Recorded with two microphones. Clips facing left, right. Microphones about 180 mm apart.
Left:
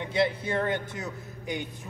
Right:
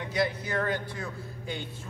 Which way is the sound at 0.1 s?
25° left (ahead or behind).